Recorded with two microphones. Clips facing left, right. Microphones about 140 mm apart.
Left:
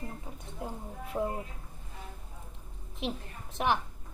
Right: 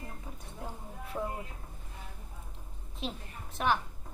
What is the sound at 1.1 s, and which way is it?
Speech, 10° left (ahead or behind).